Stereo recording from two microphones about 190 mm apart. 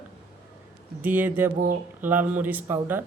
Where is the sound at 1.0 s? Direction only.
10° right (ahead or behind).